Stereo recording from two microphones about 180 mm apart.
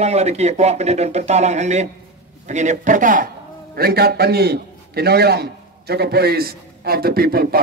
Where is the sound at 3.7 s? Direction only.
60° right (ahead or behind).